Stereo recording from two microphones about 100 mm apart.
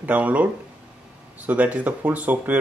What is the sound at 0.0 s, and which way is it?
Speech, 15° right (ahead or behind).